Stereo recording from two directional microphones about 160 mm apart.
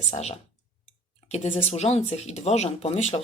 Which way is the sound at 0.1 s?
45° left (ahead or behind).